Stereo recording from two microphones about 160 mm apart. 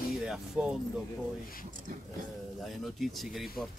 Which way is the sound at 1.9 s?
60° right (ahead or behind).